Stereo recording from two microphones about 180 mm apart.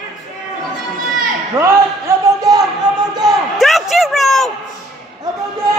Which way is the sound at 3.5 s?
Centre (ahead or behind).